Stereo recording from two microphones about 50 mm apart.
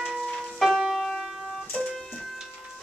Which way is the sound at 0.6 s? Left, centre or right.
Centre.